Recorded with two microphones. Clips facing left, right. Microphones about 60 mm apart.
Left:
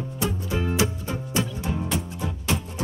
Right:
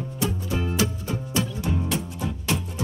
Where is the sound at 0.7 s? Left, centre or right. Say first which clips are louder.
Left 1 dB; left.